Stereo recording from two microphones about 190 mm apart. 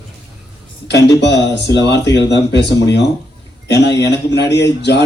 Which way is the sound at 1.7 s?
65° left (ahead or behind).